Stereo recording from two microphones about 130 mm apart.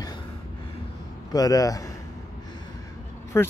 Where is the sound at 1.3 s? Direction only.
30° left (ahead or behind).